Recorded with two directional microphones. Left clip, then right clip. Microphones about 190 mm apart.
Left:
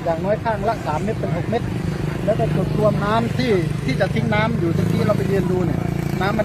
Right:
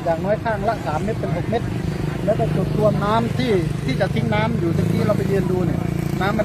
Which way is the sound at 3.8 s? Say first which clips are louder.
Left 1 dB; 10° left (ahead or behind).